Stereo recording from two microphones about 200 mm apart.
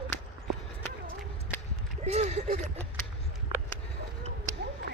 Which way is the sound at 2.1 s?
35° right (ahead or behind).